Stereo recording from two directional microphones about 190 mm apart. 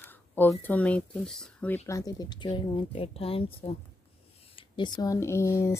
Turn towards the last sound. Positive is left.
turn(degrees=15)  # may be behind; listen again after turning